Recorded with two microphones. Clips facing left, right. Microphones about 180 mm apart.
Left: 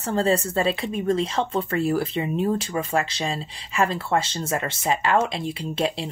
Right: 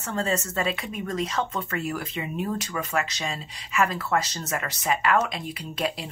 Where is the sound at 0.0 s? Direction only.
30° left (ahead or behind).